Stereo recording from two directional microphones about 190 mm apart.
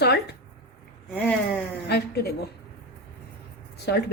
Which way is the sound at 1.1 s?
10° left (ahead or behind).